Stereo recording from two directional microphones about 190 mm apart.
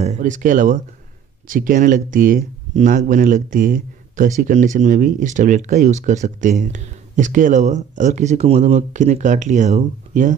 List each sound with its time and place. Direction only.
0.0 s speech: 40° right (ahead or behind)